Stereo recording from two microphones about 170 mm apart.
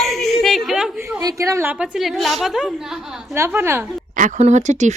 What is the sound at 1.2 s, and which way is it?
Speech, 20° right (ahead or behind).